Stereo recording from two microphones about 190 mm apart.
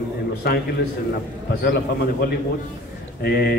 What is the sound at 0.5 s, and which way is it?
Speech, 55° left (ahead or behind).